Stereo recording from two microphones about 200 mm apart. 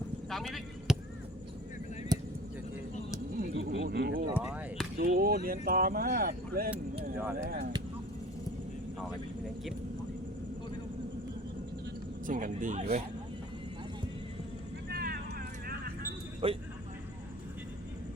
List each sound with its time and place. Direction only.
0.3 s a sound: centre (ahead or behind)
2.1 s basketball bounce: 20° right (ahead or behind)
3.3 s a sound: 45° right (ahead or behind)
3.6 s a sound: 65° right (ahead or behind)
4.4 s chop: 5° right (ahead or behind)
4.9 s speech: 45° right (ahead or behind)
12.2 s speech: 40° right (ahead or behind)
14.8 s vehicle: 50° right (ahead or behind)
16.4 s speech: 25° right (ahead or behind)